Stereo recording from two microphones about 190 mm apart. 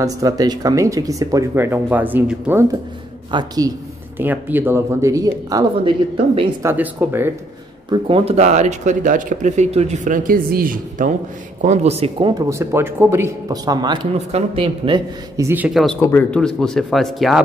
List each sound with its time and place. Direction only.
0.0 s speech: 20° right (ahead or behind)
3.3 s speech: 20° right (ahead or behind)
4.2 s speech: 10° right (ahead or behind); by 6.5 s 25° right (ahead or behind)
6.6 s speech: 10° right (ahead or behind)
7.9 s speech: 30° right (ahead or behind); by 11.1 s 45° right (ahead or behind)
11.6 s speech: 35° right (ahead or behind)
12.4 s speech: 15° right (ahead or behind); by 15.0 s 30° right (ahead or behind)
15.3 s speech: 10° right (ahead or behind)
16.0 s speech: 10° left (ahead or behind)